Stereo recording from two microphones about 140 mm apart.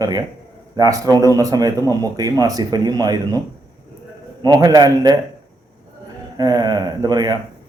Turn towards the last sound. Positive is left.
turn(degrees=-30)  # may be behind; listen again after turning